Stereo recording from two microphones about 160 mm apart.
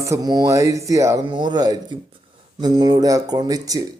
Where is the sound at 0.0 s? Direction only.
20° right (ahead or behind).